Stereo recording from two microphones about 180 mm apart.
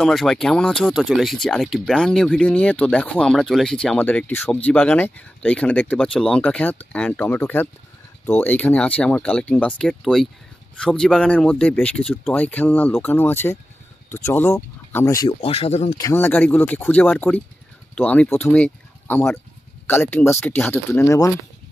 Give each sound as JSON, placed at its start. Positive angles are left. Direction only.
{"t": 0.0, "sound": "speech", "side_deg": 0}
{"t": 15.2, "sound": "speech", "side_deg": 30}
{"t": 16.0, "sound": "speech", "side_deg": 15}